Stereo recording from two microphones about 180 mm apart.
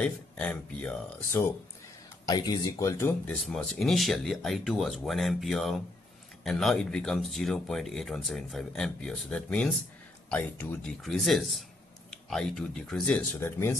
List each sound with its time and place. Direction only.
0.0 s speech: 5° left (ahead or behind)
2.2 s speech: 20° left (ahead or behind)
3.4 s speech: 5° left (ahead or behind)